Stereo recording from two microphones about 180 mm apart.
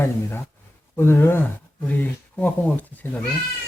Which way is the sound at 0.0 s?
10° left (ahead or behind).